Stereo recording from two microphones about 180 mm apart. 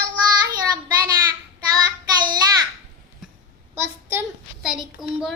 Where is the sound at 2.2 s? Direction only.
25° right (ahead or behind).